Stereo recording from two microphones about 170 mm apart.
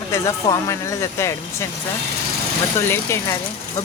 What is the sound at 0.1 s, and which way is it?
Speech, 20° left (ahead or behind).